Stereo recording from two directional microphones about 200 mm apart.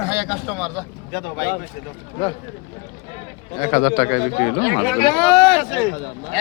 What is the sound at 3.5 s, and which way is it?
A man's voice, 25° left (ahead or behind).